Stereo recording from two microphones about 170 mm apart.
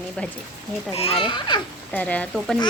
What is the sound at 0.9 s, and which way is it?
Speech, 35° left (ahead or behind).